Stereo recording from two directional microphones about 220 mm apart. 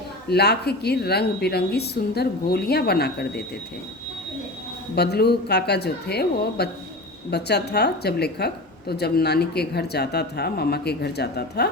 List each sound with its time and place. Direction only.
0.3 s a woman's voice: 45° left (ahead or behind)
4.9 s a woman's voice: 45° left (ahead or behind)